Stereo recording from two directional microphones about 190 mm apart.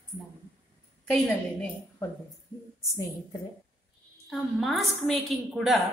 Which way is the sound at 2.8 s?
15° left (ahead or behind).